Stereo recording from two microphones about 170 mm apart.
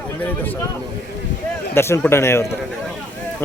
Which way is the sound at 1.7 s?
15° left (ahead or behind).